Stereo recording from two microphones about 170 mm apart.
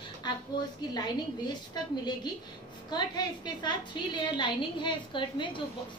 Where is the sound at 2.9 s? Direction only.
25° left (ahead or behind).